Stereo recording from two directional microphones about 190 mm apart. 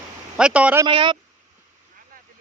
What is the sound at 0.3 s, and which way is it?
Speech, 5° right (ahead or behind).